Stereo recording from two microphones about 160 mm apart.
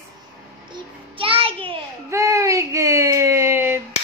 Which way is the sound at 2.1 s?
20° right (ahead or behind).